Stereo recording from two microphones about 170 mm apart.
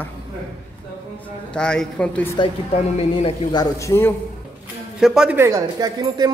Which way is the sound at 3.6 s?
15° left (ahead or behind).